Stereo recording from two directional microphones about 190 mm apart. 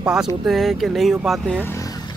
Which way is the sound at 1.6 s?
15° left (ahead or behind).